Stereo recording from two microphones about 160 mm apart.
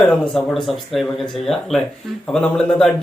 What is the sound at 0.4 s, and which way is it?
Speech, centre (ahead or behind).